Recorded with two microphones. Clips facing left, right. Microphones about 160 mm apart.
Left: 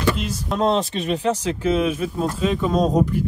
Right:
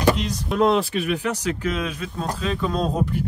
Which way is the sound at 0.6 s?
35° left (ahead or behind).